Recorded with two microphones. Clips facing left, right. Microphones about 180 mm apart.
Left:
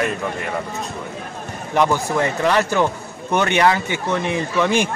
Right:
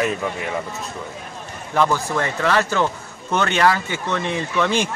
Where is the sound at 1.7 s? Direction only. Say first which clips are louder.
Left 2 dB; 15° left (ahead or behind).